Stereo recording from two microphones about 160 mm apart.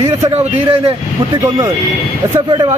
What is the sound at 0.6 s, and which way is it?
Speech, 35° right (ahead or behind).